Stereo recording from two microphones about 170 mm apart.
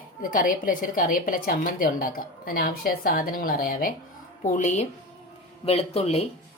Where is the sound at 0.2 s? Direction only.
50° left (ahead or behind).